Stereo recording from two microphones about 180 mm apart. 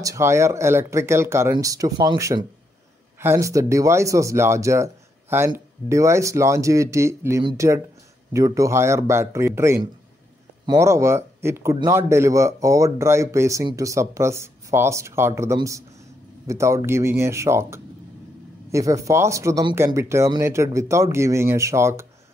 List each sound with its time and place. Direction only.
0.0 s speech: 15° right (ahead or behind)